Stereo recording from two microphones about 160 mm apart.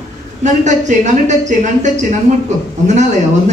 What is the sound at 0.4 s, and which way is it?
A woman's voice, 50° right (ahead or behind).